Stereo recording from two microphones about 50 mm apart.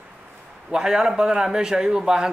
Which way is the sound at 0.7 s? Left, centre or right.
Centre.